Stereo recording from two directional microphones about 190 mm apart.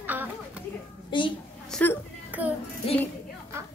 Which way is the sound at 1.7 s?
Centre (ahead or behind).